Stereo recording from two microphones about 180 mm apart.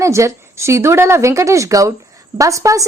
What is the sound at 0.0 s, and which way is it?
A woman's voice, 15° right (ahead or behind).